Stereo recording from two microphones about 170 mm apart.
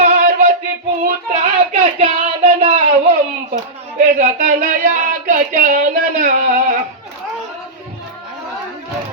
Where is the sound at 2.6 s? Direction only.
35° right (ahead or behind).